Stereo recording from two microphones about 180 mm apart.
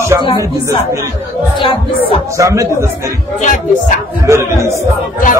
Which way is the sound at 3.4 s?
45° left (ahead or behind).